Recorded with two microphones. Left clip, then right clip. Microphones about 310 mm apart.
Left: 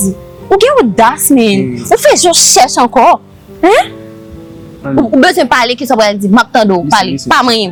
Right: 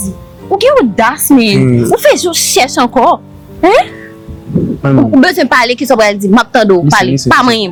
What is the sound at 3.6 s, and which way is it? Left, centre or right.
Speech, left.